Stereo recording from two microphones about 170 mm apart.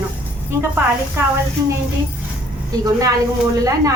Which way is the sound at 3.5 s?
20° right (ahead or behind).